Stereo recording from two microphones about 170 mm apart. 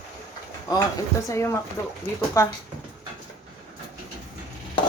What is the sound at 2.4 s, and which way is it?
Speech, 20° left (ahead or behind).